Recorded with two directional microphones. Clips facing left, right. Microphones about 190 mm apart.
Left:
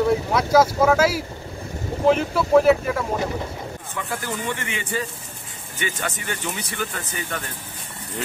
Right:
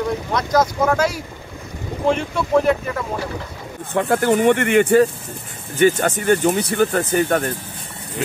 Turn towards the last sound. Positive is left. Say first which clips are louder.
# right 13 dB
turn(degrees=-50)  # may be behind; listen again after turning